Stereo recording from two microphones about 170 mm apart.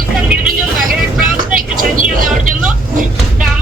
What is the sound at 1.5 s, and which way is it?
Speech, 55° right (ahead or behind).